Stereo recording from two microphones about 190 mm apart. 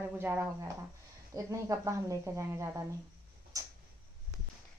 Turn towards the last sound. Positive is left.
turn(degrees=-15)  # may be behind; listen again after turning